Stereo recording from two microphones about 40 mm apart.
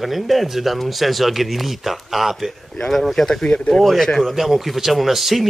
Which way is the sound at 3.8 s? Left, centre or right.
Centre.